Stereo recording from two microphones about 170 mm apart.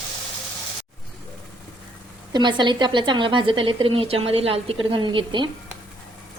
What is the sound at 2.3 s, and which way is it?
A woman's voice, 25° right (ahead or behind).